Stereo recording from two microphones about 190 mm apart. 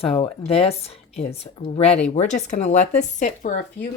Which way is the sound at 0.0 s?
30° left (ahead or behind).